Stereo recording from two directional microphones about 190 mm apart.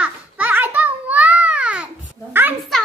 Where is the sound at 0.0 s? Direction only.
10° right (ahead or behind).